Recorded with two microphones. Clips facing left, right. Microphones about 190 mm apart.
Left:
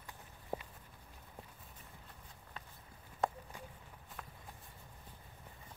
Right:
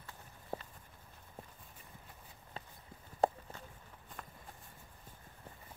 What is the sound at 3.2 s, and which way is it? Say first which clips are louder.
Clip-clop: right 5 dB; 30° right (ahead or behind).